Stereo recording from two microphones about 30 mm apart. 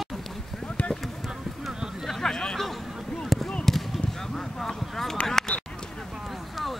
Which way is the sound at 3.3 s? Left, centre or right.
Centre.